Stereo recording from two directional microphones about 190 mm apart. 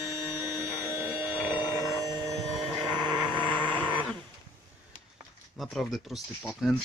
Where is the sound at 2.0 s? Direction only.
20° right (ahead or behind).